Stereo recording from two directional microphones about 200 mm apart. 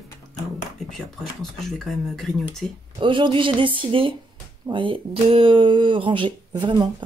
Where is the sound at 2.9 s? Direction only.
25° right (ahead or behind).